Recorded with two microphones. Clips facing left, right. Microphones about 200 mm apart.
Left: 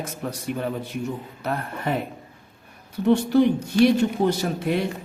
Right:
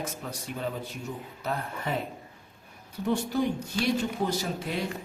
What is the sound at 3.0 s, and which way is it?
A man's voice, 70° left (ahead or behind).